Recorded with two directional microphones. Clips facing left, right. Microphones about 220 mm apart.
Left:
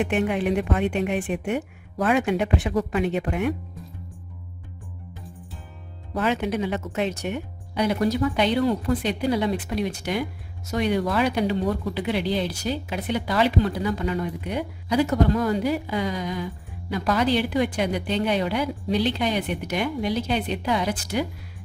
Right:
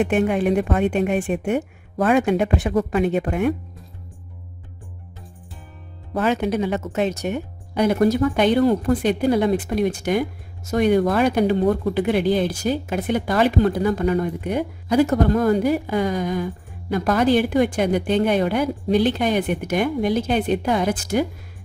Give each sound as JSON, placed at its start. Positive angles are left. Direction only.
{"t": 0.0, "sound": "speech", "side_deg": -45}
{"t": 6.1, "sound": "speech", "side_deg": -45}